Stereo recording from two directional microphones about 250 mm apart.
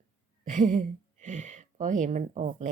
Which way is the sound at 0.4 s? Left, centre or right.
Right.